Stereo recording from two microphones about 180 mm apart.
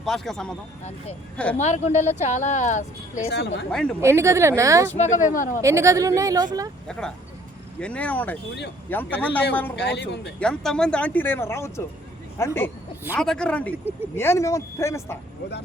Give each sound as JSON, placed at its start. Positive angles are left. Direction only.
{"t": 0.0, "sound": "a man's voice", "side_deg": 0}
{"t": 1.5, "sound": "speech", "side_deg": 40}
{"t": 3.3, "sound": "speech", "side_deg": 75}
{"t": 3.7, "sound": "a man's voice", "side_deg": 0}
{"t": 4.0, "sound": "a woman's voice", "side_deg": -15}
{"t": 4.9, "sound": "speech", "side_deg": 40}
{"t": 5.6, "sound": "a woman's voice", "side_deg": -15}
{"t": 7.8, "sound": "speech", "side_deg": 5}
{"t": 9.7, "sound": "speech", "side_deg": 70}
{"t": 10.4, "sound": "speech", "side_deg": 5}
{"t": 13.1, "sound": "a man's voice", "side_deg": 5}